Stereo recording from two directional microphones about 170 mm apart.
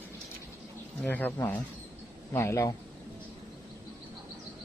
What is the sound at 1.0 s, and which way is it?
Speech, 10° left (ahead or behind).